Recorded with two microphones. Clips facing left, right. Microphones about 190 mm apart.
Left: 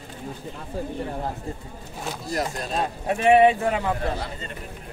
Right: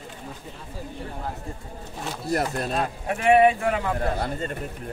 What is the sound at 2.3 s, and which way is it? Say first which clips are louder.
Speech: right 3 dB; 55° right (ahead or behind).